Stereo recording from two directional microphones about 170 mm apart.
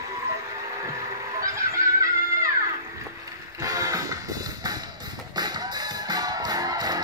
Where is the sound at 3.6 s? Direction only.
20° right (ahead or behind).